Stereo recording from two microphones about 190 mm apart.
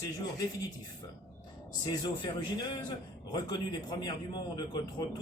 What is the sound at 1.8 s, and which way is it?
A man's voice, 20° left (ahead or behind).